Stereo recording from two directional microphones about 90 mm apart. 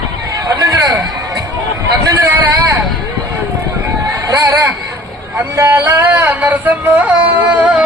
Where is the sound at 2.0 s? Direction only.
40° right (ahead or behind).